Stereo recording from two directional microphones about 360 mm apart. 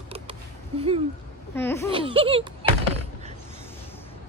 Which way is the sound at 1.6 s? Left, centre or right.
Centre.